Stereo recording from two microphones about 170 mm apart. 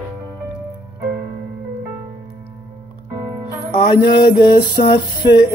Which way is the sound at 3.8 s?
25° left (ahead or behind).